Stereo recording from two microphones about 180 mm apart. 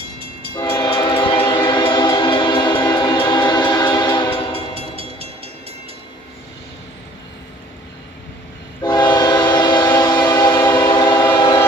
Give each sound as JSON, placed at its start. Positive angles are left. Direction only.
{"t": 0.6, "sound": "train", "side_deg": 20}
{"t": 4.7, "sound": "train", "side_deg": -35}
{"t": 8.8, "sound": "train", "side_deg": 20}